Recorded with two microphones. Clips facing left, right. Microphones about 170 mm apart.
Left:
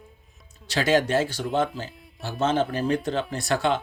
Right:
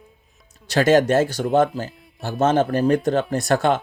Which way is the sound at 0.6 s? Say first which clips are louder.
Right 6 dB; 45° right (ahead or behind).